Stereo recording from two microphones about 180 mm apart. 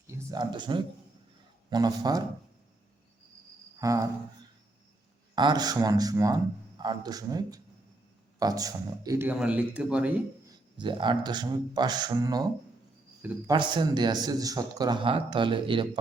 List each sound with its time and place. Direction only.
0.1 s a man's voice: 15° right (ahead or behind)
3.8 s cricket: 20° right (ahead or behind)
5.3 s a man's voice: 25° right (ahead or behind); by 10.2 s 5° right (ahead or behind)
10.8 s a man's voice: 25° right (ahead or behind)
13.5 s a man's voice: 25° right (ahead or behind)